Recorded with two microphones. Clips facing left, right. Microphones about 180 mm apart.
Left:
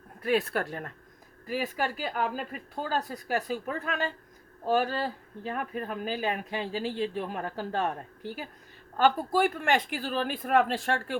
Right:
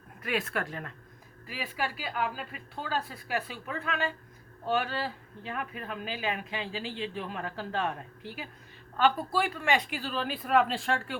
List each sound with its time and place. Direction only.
0.2 s a woman's voice: 35° left (ahead or behind)